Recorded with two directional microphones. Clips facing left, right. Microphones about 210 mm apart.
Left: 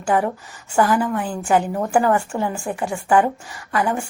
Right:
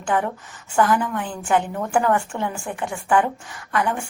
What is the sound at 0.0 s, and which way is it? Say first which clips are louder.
A woman's voice: left 3 dB; 10° left (ahead or behind).